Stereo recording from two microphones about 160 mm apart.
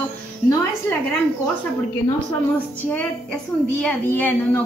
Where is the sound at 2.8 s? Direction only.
10° left (ahead or behind).